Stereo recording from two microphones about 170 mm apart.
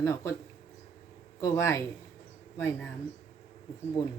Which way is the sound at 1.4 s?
15° left (ahead or behind).